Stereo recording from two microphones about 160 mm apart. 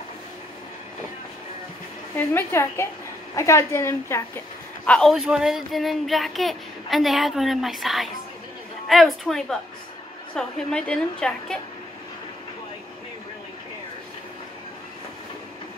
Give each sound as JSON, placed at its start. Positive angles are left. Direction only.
{"t": 2.1, "sound": "a woman's voice", "side_deg": 15}
{"t": 4.8, "sound": "speech", "side_deg": 5}